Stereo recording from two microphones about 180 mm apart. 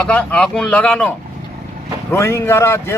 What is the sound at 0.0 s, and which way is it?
A man's voice, 5° left (ahead or behind).